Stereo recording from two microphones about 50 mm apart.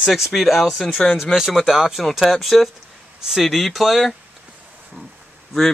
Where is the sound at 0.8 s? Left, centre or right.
Left.